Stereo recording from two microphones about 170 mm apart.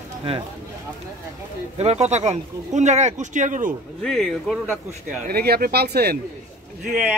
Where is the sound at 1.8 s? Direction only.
40° right (ahead or behind).